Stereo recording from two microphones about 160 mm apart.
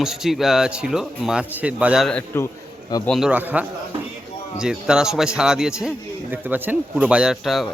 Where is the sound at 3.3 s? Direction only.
10° right (ahead or behind).